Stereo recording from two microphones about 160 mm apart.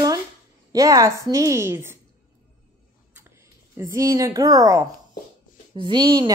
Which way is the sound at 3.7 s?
20° right (ahead or behind).